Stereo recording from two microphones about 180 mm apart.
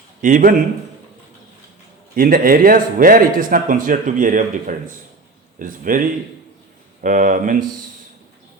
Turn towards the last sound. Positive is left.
turn(degrees=-45)  # may be behind; listen again after turning